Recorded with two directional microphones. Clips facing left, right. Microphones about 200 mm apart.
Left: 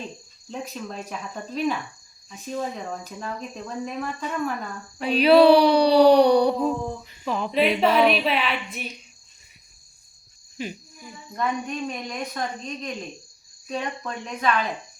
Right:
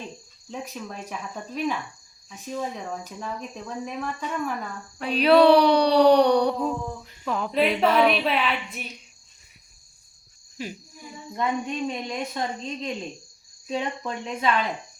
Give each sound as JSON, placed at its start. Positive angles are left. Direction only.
{"t": 0.5, "sound": "speech", "side_deg": -10}
{"t": 4.9, "sound": "speech", "side_deg": 0}
{"t": 10.6, "sound": "speech", "side_deg": 0}
{"t": 11.3, "sound": "speech", "side_deg": -25}